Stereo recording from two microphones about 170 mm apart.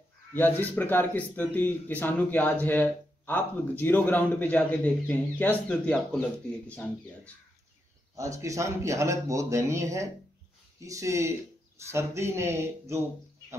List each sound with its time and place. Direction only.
0.3 s speech: 10° left (ahead or behind)
8.2 s speech: 20° right (ahead or behind)